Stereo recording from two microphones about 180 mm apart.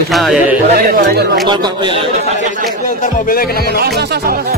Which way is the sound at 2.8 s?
45° left (ahead or behind).